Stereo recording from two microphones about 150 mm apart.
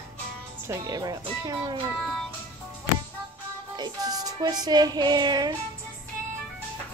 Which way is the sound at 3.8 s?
25° right (ahead or behind).